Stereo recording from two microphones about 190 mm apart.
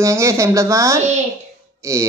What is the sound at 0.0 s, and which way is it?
Speech, 15° right (ahead or behind).